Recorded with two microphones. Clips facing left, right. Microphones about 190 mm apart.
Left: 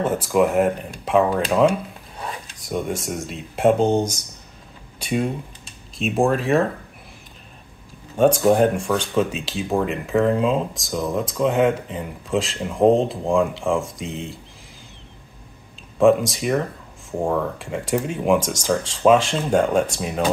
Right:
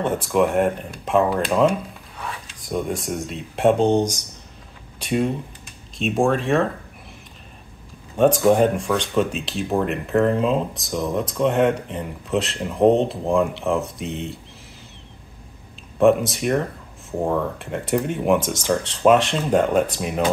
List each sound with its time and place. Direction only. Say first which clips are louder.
0.0 s speech: left 1 dB; centre (ahead or behind)
2.1 s a sound: left 1 dB; 35° left (ahead or behind)
2.6 s speech: even; centre (ahead or behind)
8.2 s speech: even; centre (ahead or behind)
16.0 s speech: even; centre (ahead or behind)